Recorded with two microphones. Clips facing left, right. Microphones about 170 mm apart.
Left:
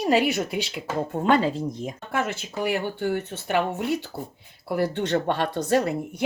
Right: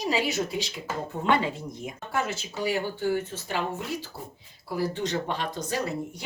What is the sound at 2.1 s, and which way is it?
Speech, 60° left (ahead or behind).